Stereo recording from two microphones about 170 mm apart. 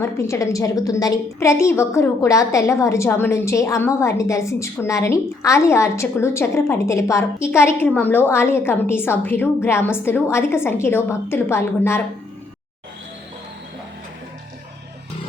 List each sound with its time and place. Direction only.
0.0 s a woman's voice: 15° left (ahead or behind)